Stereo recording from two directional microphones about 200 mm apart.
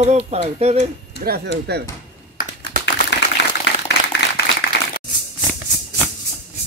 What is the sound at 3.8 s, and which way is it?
Clapping, 60° left (ahead or behind).